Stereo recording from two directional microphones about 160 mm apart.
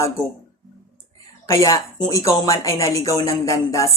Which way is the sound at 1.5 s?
20° left (ahead or behind).